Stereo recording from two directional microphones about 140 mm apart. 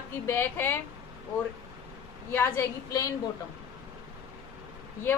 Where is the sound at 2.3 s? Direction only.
20° left (ahead or behind).